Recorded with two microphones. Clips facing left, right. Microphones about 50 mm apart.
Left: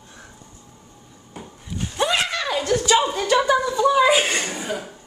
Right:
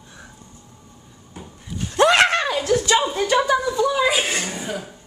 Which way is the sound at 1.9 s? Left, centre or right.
Right.